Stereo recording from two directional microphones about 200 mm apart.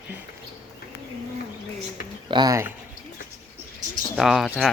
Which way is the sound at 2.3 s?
20° right (ahead or behind).